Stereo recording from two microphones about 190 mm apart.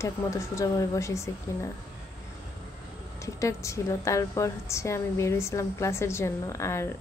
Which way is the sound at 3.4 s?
15° left (ahead or behind).